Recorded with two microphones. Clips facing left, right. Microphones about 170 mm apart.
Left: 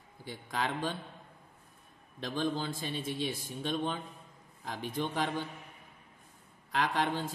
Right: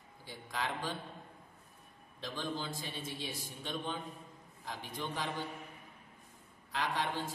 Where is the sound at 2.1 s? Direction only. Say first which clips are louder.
Left 6 dB; 60° left (ahead or behind).